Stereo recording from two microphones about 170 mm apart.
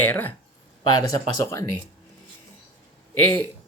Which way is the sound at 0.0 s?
10° left (ahead or behind).